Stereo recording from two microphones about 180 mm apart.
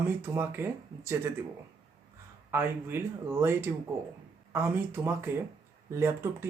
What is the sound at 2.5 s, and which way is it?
Speech, 10° right (ahead or behind).